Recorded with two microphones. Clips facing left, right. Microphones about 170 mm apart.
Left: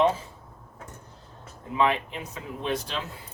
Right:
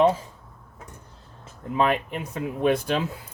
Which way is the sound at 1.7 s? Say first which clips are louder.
Right 2 dB; 50° right (ahead or behind).